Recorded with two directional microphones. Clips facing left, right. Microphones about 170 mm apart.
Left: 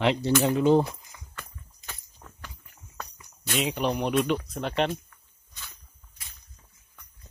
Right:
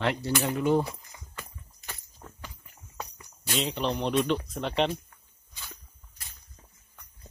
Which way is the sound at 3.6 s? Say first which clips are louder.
Left 2 dB; 10° left (ahead or behind).